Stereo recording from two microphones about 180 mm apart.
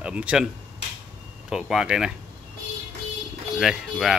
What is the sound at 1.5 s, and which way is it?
Speech, 5° right (ahead or behind).